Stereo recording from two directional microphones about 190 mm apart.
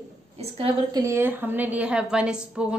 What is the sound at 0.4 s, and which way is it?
Speech, 30° right (ahead or behind).